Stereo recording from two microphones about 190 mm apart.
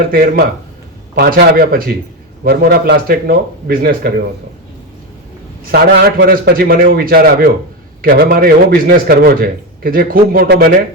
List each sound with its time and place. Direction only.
0.1 s a man's voice: 50° right (ahead or behind)
5.7 s a man's voice: 55° right (ahead or behind)